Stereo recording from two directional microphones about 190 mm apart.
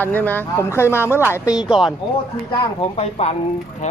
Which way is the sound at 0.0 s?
10° left (ahead or behind).